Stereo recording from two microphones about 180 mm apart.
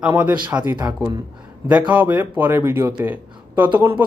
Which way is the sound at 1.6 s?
10° right (ahead or behind).